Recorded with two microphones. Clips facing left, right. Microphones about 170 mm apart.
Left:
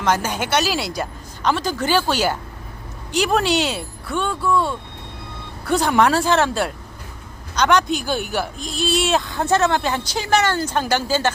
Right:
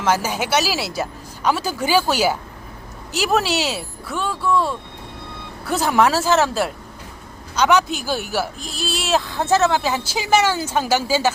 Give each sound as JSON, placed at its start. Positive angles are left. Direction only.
{"t": 0.0, "sound": "a woman's voice", "side_deg": -5}